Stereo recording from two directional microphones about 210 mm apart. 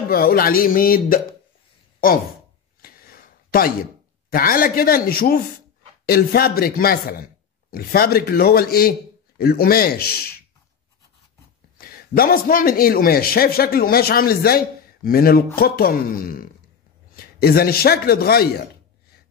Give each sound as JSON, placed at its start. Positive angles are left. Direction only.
{"t": 0.1, "sound": "a man's voice", "side_deg": 45}
{"t": 2.8, "sound": "a sound", "side_deg": 45}
{"t": 4.3, "sound": "a man's voice", "side_deg": 45}
{"t": 11.9, "sound": "a man's voice", "side_deg": 45}